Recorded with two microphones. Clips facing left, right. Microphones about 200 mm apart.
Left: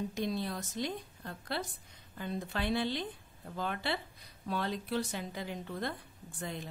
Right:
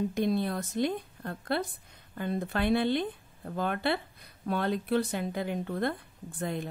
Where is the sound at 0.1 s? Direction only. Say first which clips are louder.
Right 7 dB; 55° right (ahead or behind).